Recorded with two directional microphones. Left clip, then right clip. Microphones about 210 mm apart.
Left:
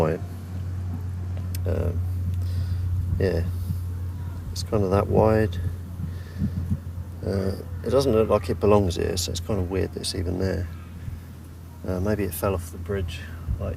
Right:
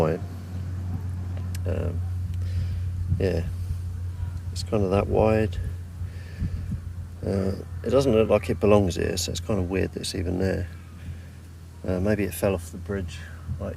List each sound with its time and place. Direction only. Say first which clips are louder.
1.5 s speech: left 2 dB; centre (ahead or behind)
3.2 s speech: left 1 dB; 5° right (ahead or behind)
4.7 s speech: left 1 dB; 5° right (ahead or behind)
7.3 s speech: even; 10° right (ahead or behind)
11.9 s speech: right 1 dB; 20° right (ahead or behind)
12.9 s speech: left 2 dB; 5° right (ahead or behind)